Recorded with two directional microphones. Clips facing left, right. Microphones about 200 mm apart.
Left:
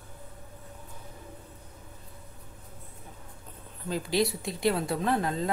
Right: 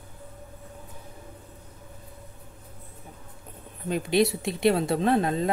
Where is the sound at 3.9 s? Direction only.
20° right (ahead or behind).